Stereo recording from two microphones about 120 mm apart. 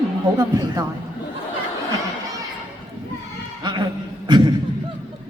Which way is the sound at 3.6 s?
40° right (ahead or behind).